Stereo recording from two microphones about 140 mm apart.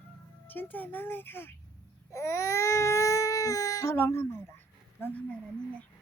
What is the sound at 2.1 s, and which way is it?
Baby cry, 20° left (ahead or behind).